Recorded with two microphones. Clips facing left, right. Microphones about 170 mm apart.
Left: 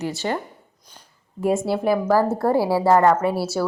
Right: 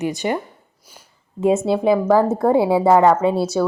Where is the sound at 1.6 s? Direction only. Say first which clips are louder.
Right 4 dB; 20° right (ahead or behind).